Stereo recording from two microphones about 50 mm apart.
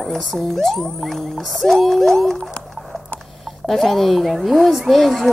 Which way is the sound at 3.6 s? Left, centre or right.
Centre.